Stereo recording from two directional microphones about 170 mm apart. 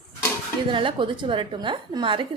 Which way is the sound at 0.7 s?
30° right (ahead or behind).